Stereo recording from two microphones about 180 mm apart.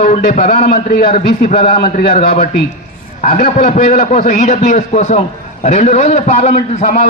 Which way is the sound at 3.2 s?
45° left (ahead or behind).